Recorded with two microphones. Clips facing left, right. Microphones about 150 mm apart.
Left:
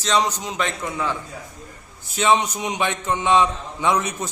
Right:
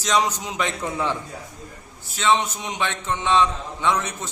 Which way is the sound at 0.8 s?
25° right (ahead or behind).